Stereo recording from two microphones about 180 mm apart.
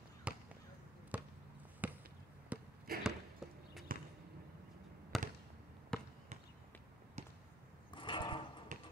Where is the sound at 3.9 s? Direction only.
50° right (ahead or behind).